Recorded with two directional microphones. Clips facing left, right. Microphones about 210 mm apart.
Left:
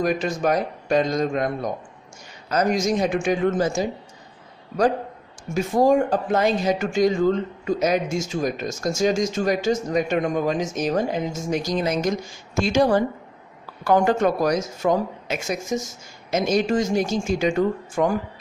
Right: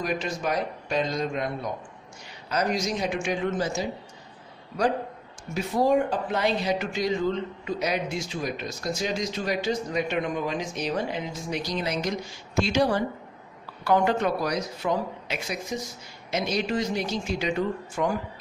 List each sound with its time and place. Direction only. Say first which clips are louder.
0.0 s speech: left 7 dB; 50° left (ahead or behind)
5.5 s speech: left 5 dB; 45° left (ahead or behind)